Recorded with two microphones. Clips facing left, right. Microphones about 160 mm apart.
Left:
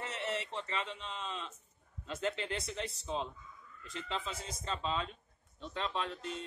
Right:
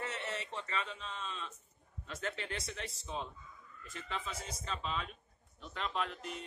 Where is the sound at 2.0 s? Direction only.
30° left (ahead or behind).